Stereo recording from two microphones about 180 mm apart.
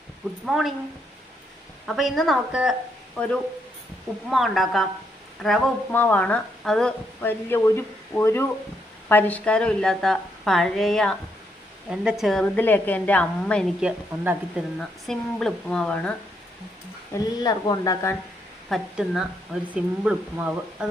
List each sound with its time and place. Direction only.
0.4 s speech: centre (ahead or behind)
1.9 s a woman's voice: centre (ahead or behind)
13.8 s speech: 5° right (ahead or behind)
17.4 s speech: 20° left (ahead or behind)
18.7 s speech: centre (ahead or behind)